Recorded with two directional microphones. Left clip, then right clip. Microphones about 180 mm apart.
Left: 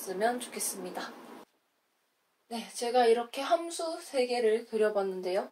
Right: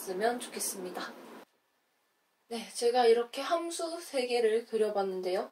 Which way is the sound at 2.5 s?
15° left (ahead or behind).